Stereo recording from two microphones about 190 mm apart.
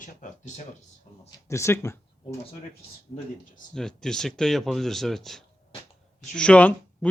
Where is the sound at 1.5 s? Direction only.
15° left (ahead or behind).